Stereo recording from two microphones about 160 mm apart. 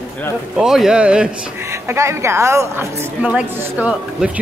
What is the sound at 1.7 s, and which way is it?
Speech, 15° right (ahead or behind).